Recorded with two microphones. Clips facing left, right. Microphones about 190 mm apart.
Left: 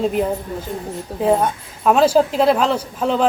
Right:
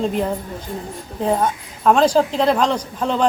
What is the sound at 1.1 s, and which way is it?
Speech, 35° left (ahead or behind).